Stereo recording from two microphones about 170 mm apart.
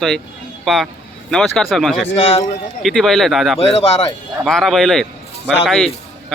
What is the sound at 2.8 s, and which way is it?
Speech, centre (ahead or behind).